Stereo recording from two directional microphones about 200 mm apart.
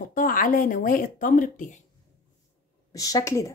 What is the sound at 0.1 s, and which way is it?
Speech, 45° left (ahead or behind).